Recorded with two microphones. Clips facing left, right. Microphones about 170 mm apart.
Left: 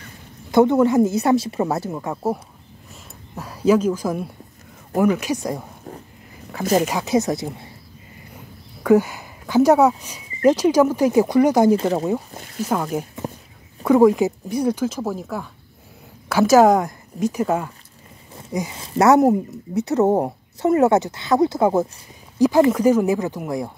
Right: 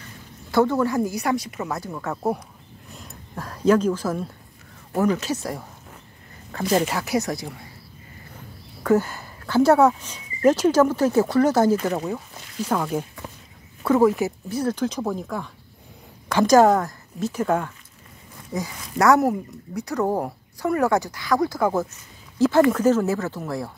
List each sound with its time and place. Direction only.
0.5 s speech: 20° left (ahead or behind)
2.9 s a sound: 5° left (ahead or behind)
4.9 s speech: 10° left (ahead or behind)
6.7 s speech: 10° left (ahead or behind)
8.8 s speech: 10° left (ahead or behind)
11.7 s speech: 30° left (ahead or behind)
12.6 s speech: 10° left (ahead or behind)
18.3 s speech: 25° left (ahead or behind)